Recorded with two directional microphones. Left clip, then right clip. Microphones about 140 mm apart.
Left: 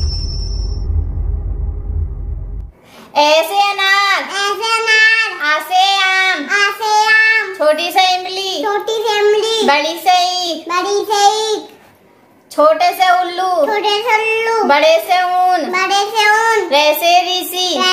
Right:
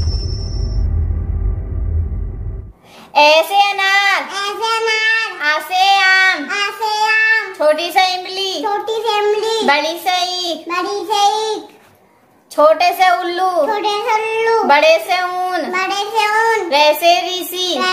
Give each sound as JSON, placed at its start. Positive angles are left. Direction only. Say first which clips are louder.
{"t": 0.0, "sound": "music", "louder": "left 2 dB", "side_deg": 0}
{"t": 3.1, "sound": "a sound", "louder": "right 1 dB", "side_deg": -20}
{"t": 4.3, "sound": "child singing", "louder": "left 2 dB", "side_deg": 30}
{"t": 5.4, "sound": "child singing", "louder": "left 2 dB", "side_deg": -20}
{"t": 6.4, "sound": "child singing", "louder": "left 4 dB", "side_deg": 30}
{"t": 7.5, "sound": "speech", "louder": "left 1 dB", "side_deg": -15}
{"t": 8.6, "sound": "a child's voice", "louder": "left 2 dB", "side_deg": 30}
{"t": 9.7, "sound": "speech", "louder": "left 3 dB", "side_deg": -15}
{"t": 10.7, "sound": "a child's voice", "louder": "left 4 dB", "side_deg": 35}
{"t": 12.5, "sound": "a woman's voice", "louder": "even", "side_deg": -25}
{"t": 13.7, "sound": "child singing", "louder": "left 2 dB", "side_deg": 30}
{"t": 14.7, "sound": "a woman's voice", "louder": "left 1 dB", "side_deg": -20}
{"t": 15.7, "sound": "a child's voice", "louder": "left 3 dB", "side_deg": 30}
{"t": 16.6, "sound": "speech", "louder": "even", "side_deg": -15}